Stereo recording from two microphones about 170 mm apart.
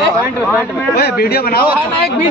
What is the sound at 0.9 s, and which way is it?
Speech, 65° left (ahead or behind).